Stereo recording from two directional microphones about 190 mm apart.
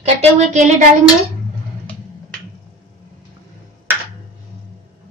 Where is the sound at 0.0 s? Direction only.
35° right (ahead or behind).